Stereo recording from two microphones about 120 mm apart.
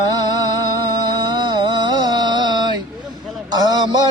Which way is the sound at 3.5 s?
35° right (ahead or behind).